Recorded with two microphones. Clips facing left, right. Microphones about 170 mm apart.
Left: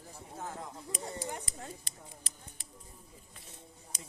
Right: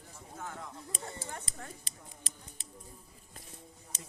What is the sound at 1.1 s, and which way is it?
Clip-clop, 15° left (ahead or behind).